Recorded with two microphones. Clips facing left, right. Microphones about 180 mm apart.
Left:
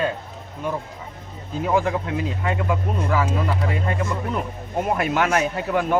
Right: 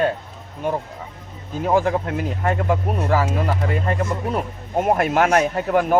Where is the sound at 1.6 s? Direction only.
40° right (ahead or behind).